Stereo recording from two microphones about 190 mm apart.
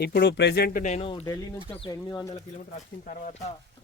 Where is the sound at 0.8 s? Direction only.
30° left (ahead or behind).